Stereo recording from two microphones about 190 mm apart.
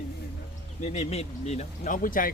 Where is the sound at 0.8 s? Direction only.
35° left (ahead or behind).